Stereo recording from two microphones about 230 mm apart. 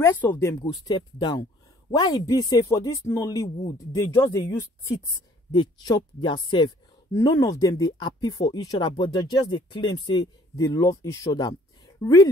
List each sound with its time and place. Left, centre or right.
0.0 s speech: centre